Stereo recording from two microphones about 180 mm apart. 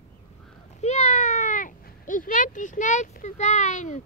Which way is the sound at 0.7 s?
40° left (ahead or behind).